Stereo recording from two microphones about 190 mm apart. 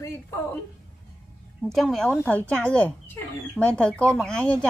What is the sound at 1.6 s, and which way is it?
Speech, centre (ahead or behind).